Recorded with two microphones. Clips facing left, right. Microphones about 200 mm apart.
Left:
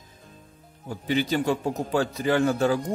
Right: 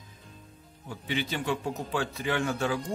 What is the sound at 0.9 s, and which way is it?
A man's voice, 40° left (ahead or behind).